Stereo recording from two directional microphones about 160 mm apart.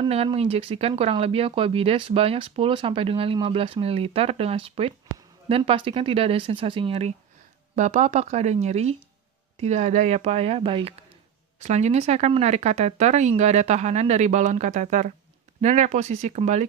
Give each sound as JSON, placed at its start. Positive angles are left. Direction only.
{"t": 0.0, "sound": "speech", "side_deg": -40}